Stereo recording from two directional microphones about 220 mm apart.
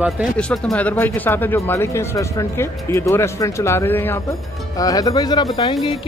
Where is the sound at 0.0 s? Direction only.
Centre (ahead or behind).